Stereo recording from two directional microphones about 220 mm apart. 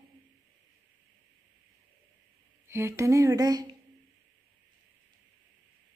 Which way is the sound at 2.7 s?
10° right (ahead or behind).